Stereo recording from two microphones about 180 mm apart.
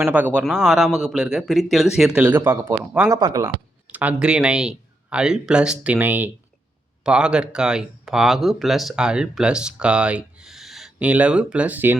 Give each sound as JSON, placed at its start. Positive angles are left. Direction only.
{"t": 0.0, "sound": "speech", "side_deg": -5}
{"t": 3.9, "sound": "speech", "side_deg": -5}